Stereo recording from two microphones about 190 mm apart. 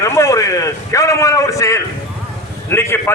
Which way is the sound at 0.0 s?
15° left (ahead or behind).